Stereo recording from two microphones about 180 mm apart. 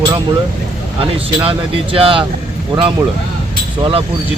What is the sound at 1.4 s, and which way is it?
Speech, 30° right (ahead or behind).